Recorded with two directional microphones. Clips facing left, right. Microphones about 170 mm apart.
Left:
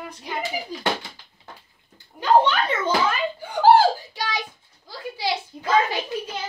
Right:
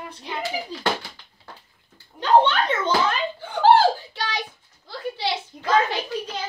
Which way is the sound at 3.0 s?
10° left (ahead or behind).